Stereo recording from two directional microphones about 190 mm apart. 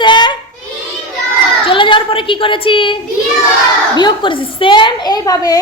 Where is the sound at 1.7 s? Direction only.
25° left (ahead or behind).